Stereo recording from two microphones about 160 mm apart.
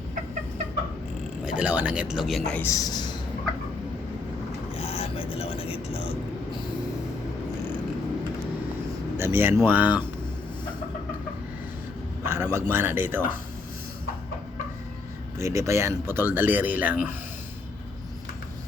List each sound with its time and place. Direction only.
1.5 s speech: 10° right (ahead or behind)
2.6 s a man's voice: 20° left (ahead or behind)
4.8 s vehicle: 35° left (ahead or behind)
9.1 s speech: 15° right (ahead or behind)
12.2 s speech: 15° right (ahead or behind)
15.4 s speech: 15° right (ahead or behind)